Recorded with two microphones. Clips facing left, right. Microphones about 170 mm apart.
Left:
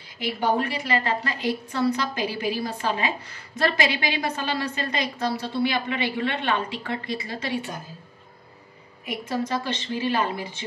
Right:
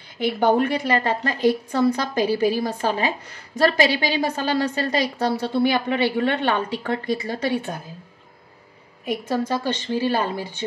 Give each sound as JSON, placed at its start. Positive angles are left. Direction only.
{"t": 0.2, "sound": "a woman's voice", "side_deg": -55}
{"t": 9.0, "sound": "a woman's voice", "side_deg": -40}